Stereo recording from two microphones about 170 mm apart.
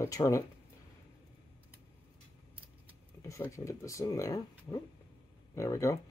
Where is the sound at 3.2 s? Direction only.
15° left (ahead or behind).